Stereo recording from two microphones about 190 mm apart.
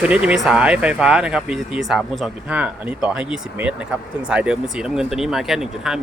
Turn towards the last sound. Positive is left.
turn(degrees=0)  # may be behind; listen again after turning